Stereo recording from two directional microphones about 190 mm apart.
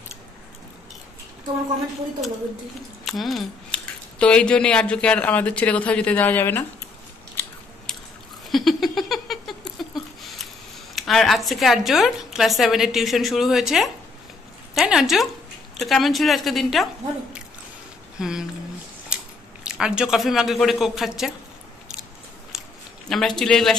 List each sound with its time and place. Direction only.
3.1 s speech: centre (ahead or behind)
7.4 s biting: 10° left (ahead or behind)
8.5 s a sound: centre (ahead or behind)
11.0 s speech: centre (ahead or behind)
19.1 s squish: 5° right (ahead or behind)
19.6 s speech: 5° right (ahead or behind)
23.0 s speech: centre (ahead or behind)